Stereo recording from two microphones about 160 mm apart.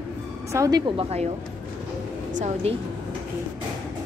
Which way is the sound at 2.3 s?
45° right (ahead or behind).